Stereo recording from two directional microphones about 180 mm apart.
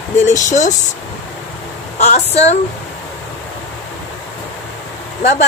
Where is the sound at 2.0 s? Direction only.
35° left (ahead or behind).